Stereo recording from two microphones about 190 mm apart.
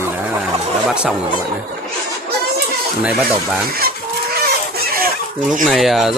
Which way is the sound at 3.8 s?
55° right (ahead or behind).